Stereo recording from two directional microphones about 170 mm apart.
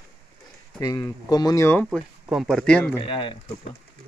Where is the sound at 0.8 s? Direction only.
20° left (ahead or behind).